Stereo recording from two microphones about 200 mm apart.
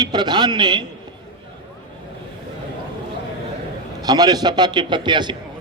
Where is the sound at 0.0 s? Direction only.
20° right (ahead or behind).